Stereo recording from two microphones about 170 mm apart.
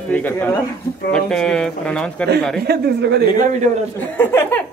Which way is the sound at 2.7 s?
75° right (ahead or behind).